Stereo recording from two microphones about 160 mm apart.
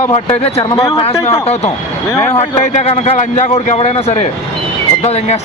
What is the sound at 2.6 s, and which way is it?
A man's voice, 45° left (ahead or behind).